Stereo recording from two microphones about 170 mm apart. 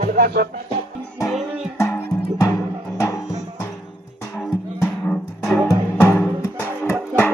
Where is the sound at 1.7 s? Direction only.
15° left (ahead or behind).